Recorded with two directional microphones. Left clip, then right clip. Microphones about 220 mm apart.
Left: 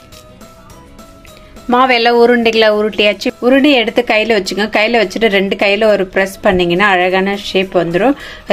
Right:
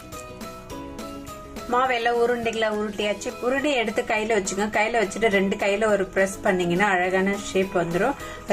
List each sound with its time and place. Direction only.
1.7 s a woman's voice: 45° left (ahead or behind)